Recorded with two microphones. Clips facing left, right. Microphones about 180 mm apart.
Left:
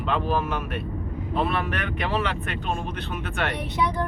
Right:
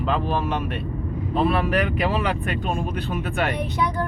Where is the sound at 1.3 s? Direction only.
5° right (ahead or behind).